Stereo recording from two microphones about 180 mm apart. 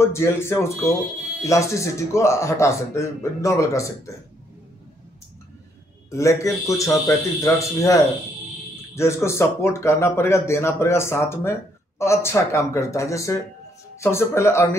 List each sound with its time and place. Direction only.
0.0 s speech: 15° left (ahead or behind)
6.0 s speech: 15° left (ahead or behind)